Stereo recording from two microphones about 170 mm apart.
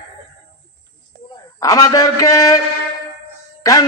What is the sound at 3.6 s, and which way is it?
Speech, 20° left (ahead or behind).